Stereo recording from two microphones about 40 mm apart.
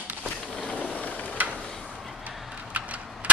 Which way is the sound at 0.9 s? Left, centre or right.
Left.